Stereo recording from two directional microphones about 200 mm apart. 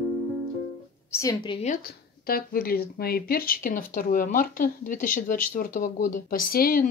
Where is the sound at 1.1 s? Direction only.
15° left (ahead or behind).